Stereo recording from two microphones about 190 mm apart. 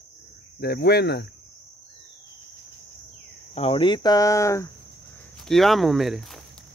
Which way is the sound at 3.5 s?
30° left (ahead or behind).